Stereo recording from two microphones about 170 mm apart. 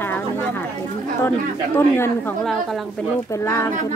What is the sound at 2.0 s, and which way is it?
Speech, 15° left (ahead or behind).